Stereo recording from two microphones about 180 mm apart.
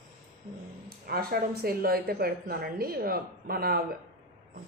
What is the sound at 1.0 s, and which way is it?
A woman's voice, 55° right (ahead or behind).